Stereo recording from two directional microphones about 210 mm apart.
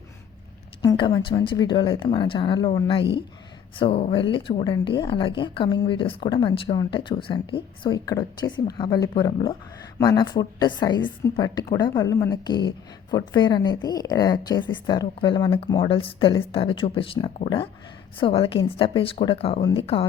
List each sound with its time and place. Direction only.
0.8 s a woman's voice: 20° left (ahead or behind)